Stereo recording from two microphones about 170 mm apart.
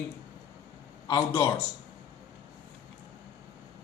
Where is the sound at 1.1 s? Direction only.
15° left (ahead or behind).